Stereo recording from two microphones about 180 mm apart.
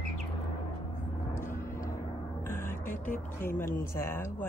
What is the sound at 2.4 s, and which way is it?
Music, 15° left (ahead or behind).